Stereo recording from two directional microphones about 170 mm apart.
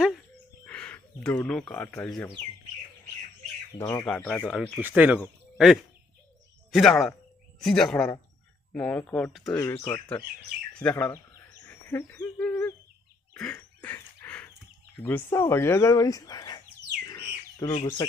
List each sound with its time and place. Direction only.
0.7 s speech: 5° left (ahead or behind)
3.7 s speech: 15° left (ahead or behind)
4.0 s speech: 5° left (ahead or behind)
9.6 s speech: 15° left (ahead or behind)
11.6 s owl: 10° left (ahead or behind)
13.3 s bird: 5° left (ahead or behind)
13.7 s dog: 10° left (ahead or behind)
15.0 s speech: 10° left (ahead or behind)
17.1 s bird: 20° left (ahead or behind)